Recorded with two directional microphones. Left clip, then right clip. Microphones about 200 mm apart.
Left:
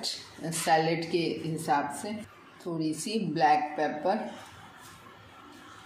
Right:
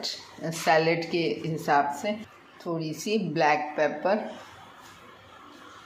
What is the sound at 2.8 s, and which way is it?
A woman's voice, 20° right (ahead or behind).